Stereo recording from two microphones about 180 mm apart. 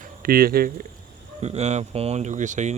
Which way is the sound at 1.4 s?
40° right (ahead or behind).